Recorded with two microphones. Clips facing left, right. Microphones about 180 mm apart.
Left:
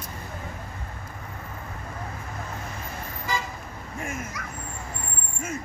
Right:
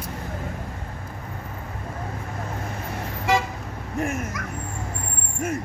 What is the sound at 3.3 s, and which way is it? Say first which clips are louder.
Vehicle: right 9 dB; 90° right.